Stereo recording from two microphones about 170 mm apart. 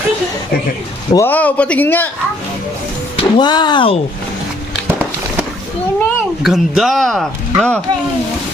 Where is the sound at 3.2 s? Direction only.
25° left (ahead or behind).